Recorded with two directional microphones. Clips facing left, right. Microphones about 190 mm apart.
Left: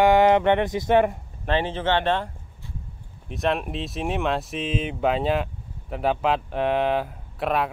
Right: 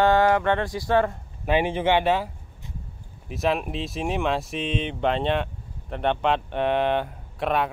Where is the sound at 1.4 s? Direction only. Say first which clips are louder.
Right 2 dB; 10° right (ahead or behind).